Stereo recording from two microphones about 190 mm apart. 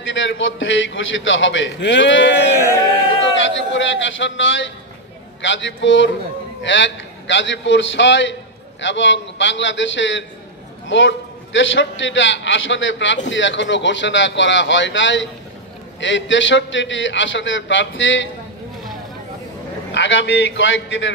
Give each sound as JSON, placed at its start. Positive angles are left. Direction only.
{"t": 0.0, "sound": "a man's voice", "side_deg": 80}
{"t": 19.9, "sound": "a man's voice", "side_deg": 70}